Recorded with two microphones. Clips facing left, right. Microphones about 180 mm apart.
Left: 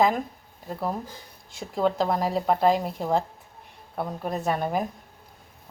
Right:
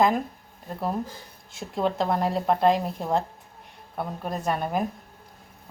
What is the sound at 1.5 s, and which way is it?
Speech, centre (ahead or behind).